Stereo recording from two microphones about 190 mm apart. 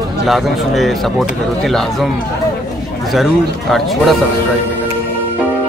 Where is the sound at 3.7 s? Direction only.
Centre (ahead or behind).